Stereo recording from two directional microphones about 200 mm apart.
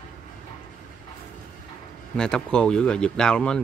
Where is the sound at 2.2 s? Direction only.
5° left (ahead or behind).